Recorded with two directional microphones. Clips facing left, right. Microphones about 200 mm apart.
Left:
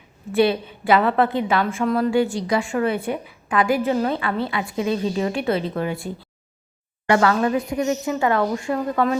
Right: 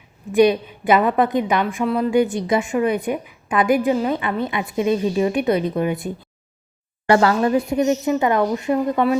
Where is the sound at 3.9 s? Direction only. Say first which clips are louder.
Right 1 dB; 10° right (ahead or behind).